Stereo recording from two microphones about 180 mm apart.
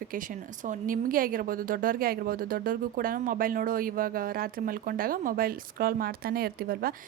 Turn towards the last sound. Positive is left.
turn(degrees=-55)  # may be behind; listen again after turning